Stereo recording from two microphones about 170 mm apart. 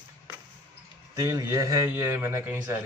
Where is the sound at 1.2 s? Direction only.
20° right (ahead or behind).